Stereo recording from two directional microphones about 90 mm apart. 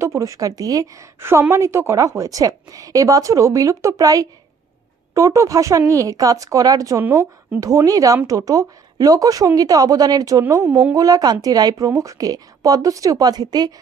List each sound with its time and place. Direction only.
0.0 s a woman's voice: 35° right (ahead or behind)